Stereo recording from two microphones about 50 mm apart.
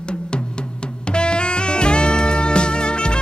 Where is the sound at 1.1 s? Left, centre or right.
Centre.